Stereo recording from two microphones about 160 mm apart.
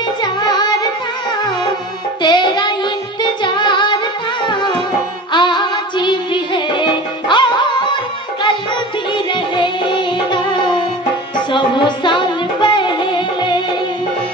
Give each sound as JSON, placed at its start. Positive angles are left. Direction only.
{"t": 0.2, "sound": "music", "side_deg": 25}
{"t": 2.2, "sound": "music", "side_deg": 30}